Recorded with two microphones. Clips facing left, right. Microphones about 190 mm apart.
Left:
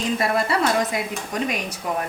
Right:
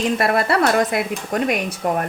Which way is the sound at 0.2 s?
65° right (ahead or behind).